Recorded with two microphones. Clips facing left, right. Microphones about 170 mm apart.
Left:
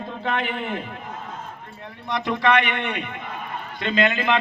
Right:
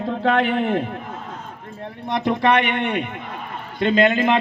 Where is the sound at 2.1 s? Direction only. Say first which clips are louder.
Right 3 dB; 55° right (ahead or behind).